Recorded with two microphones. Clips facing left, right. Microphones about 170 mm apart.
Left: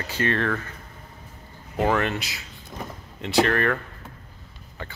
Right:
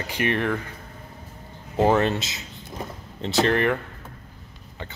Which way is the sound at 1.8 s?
25° right (ahead or behind).